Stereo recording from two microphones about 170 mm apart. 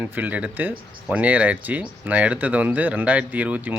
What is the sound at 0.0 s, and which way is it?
Speech, 10° right (ahead or behind).